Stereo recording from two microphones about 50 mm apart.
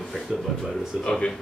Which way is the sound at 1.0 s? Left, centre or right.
Centre.